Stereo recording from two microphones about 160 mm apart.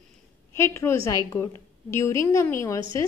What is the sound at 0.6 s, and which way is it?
A woman's voice, 15° left (ahead or behind).